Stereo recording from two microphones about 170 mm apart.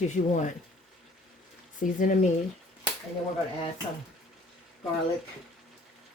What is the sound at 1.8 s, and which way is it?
Speech, 50° left (ahead or behind).